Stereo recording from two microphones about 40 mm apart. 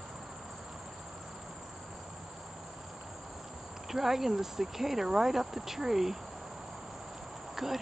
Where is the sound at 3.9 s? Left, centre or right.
Centre.